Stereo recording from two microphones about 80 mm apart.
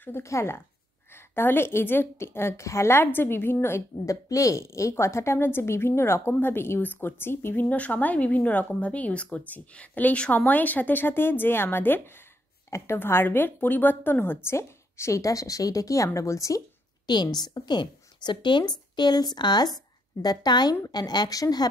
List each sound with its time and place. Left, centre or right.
0.0 s speech: left
4.0 s a woman's voice: left
17.0 s a woman's voice: left